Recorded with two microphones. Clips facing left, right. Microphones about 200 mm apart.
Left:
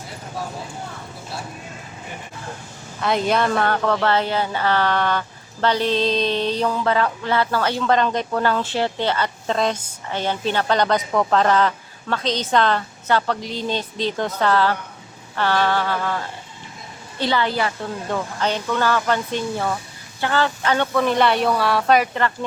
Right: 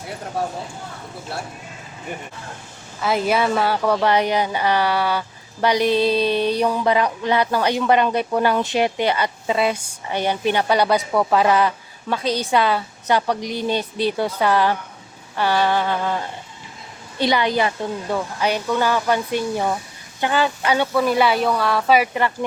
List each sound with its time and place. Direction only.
3.0 s a woman's voice: 5° right (ahead or behind)